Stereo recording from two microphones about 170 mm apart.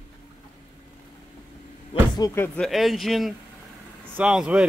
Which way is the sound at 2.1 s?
20° left (ahead or behind).